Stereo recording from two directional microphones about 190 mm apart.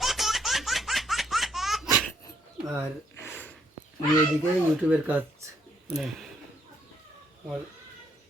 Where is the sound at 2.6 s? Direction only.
15° right (ahead or behind).